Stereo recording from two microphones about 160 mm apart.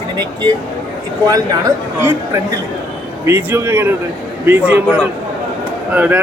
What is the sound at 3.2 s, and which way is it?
Speech, 15° right (ahead or behind).